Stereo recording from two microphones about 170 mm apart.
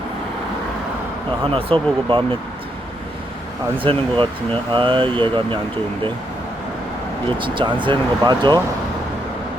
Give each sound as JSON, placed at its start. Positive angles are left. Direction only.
{"t": 1.5, "sound": "speech", "side_deg": -30}
{"t": 3.8, "sound": "speech", "side_deg": -30}
{"t": 7.3, "sound": "speech", "side_deg": -30}